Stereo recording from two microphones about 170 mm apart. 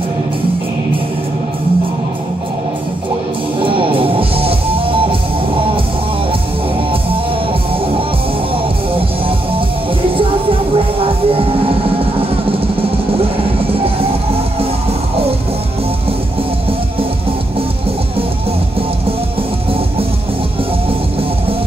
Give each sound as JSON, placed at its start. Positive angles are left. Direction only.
{"t": 3.6, "sound": "music", "side_deg": -30}
{"t": 11.0, "sound": "music", "side_deg": -35}